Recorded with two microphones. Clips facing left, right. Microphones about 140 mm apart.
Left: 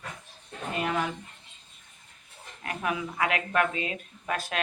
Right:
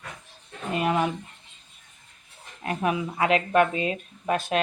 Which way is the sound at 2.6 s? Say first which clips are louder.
Right 5 dB; 25° right (ahead or behind).